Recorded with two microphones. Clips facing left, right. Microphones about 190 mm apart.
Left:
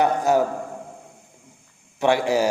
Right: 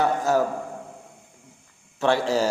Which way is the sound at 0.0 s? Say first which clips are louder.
Left 2 dB; 20° left (ahead or behind).